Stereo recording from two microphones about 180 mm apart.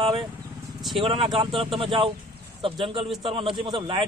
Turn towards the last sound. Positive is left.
turn(degrees=-30)  # may be behind; listen again after turning